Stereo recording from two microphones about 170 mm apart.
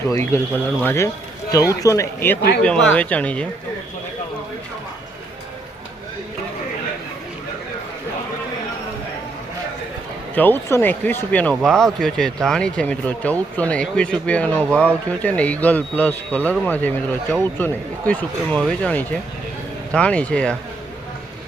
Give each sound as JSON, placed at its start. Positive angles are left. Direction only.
{"t": 0.0, "sound": "speech", "side_deg": 15}
{"t": 10.3, "sound": "speech", "side_deg": 10}